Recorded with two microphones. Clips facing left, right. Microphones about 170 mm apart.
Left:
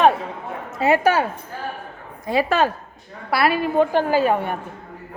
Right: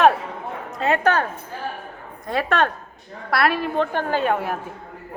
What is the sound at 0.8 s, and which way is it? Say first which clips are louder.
A woman's voice: left 2 dB; 5° left (ahead or behind).